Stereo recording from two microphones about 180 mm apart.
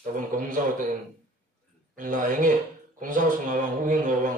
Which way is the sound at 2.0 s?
45° right (ahead or behind).